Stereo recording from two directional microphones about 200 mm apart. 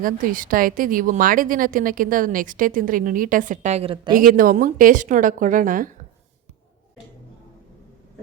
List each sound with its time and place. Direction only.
0.0 s a woman's voice: 45° right (ahead or behind); by 4.1 s 25° right (ahead or behind)
4.1 s speech: 45° right (ahead or behind)